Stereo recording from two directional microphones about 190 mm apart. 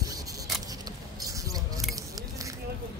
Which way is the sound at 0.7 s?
20° right (ahead or behind).